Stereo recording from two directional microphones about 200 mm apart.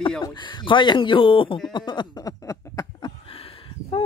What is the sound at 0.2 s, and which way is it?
Speech, 20° left (ahead or behind).